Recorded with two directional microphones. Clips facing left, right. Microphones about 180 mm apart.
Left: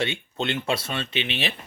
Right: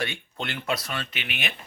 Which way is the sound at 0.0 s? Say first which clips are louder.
Left 5 dB; 25° left (ahead or behind).